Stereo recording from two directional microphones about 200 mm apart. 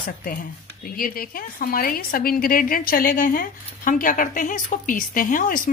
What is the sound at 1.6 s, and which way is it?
A woman's voice, 45° left (ahead or behind).